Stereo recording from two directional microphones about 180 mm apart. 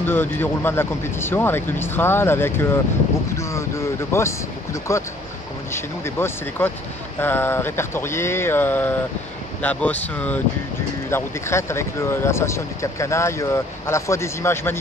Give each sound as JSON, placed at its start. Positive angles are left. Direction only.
{"t": 0.0, "sound": "speech", "side_deg": 10}